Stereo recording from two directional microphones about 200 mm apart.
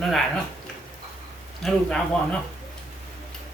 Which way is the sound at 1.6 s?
5° left (ahead or behind).